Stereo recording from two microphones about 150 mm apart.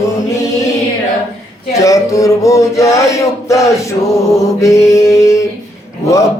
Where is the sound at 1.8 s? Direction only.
20° left (ahead or behind).